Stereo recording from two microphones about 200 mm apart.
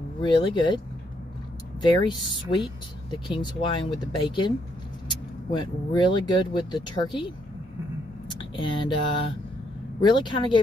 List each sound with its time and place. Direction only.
0.2 s speech: 25° left (ahead or behind)
1.8 s speech: 20° left (ahead or behind)
9.9 s speech: 25° left (ahead or behind)